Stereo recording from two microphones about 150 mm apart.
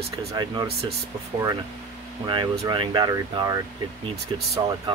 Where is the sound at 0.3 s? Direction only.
25° right (ahead or behind).